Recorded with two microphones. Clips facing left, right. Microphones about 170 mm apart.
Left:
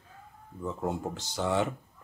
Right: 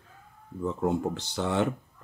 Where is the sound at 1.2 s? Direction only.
60° right (ahead or behind).